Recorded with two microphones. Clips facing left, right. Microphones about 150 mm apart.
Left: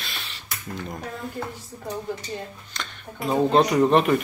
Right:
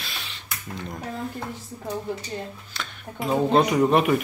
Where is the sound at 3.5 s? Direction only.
5° right (ahead or behind).